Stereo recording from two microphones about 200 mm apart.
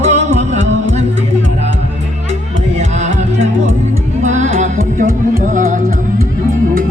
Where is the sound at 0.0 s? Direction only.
35° right (ahead or behind).